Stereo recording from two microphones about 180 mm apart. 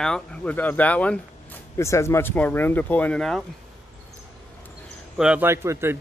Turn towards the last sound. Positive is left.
turn(degrees=-15)  # may be behind; listen again after turning